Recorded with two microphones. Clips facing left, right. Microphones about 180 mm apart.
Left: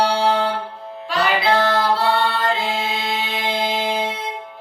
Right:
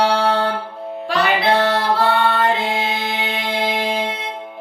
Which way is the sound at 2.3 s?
60° right (ahead or behind).